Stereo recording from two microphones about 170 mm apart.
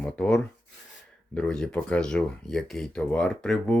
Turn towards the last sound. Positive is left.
turn(degrees=5)  # may be behind; listen again after turning